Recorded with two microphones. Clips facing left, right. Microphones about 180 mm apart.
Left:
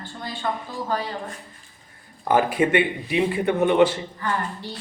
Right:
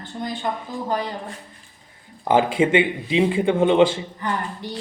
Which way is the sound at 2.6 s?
25° right (ahead or behind).